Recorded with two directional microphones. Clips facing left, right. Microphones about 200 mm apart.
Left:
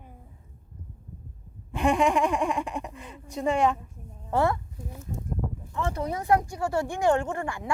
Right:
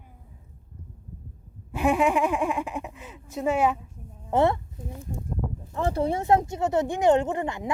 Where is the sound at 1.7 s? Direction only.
5° right (ahead or behind).